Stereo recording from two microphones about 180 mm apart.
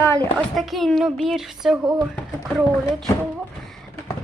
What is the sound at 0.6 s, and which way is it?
Speech, centre (ahead or behind).